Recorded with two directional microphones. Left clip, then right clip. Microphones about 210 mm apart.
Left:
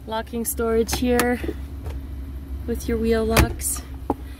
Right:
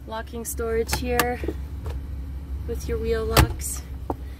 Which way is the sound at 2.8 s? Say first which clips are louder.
Left 4 dB; 30° left (ahead or behind).